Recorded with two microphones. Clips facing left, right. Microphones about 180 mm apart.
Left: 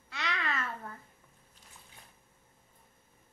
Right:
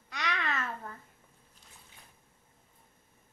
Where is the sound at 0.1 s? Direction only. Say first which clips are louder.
Right 1 dB; 15° right (ahead or behind).